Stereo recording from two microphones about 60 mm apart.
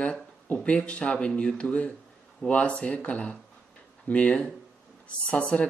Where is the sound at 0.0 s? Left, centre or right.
Centre.